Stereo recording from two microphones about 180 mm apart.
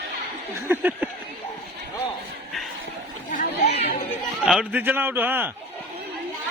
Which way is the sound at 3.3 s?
45° left (ahead or behind).